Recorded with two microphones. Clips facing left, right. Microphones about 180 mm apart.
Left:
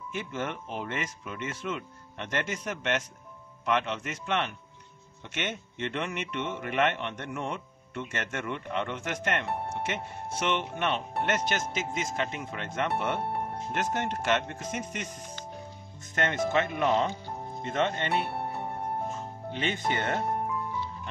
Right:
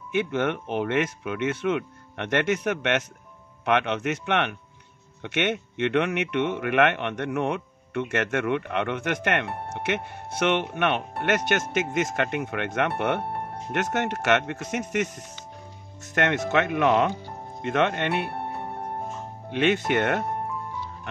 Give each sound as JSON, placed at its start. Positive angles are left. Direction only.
{"t": 0.1, "sound": "speech", "side_deg": -65}
{"t": 19.5, "sound": "speech", "side_deg": -75}